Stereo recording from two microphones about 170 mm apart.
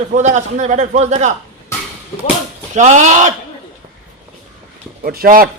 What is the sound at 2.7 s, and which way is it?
Speech, 45° right (ahead or behind).